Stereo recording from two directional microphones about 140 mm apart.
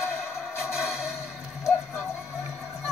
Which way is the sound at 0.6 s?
5° right (ahead or behind).